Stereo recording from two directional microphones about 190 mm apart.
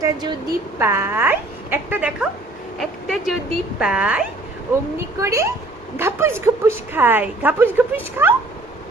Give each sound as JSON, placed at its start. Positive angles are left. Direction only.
{"t": 0.0, "sound": "a woman's voice", "side_deg": -20}
{"t": 5.2, "sound": "a woman's voice", "side_deg": -15}